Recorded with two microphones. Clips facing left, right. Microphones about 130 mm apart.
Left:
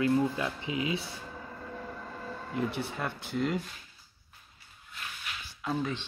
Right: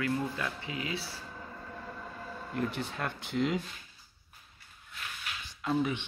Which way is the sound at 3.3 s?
Centre (ahead or behind).